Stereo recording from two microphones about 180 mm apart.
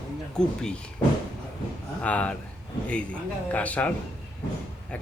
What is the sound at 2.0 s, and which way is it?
Speech, 10° left (ahead or behind).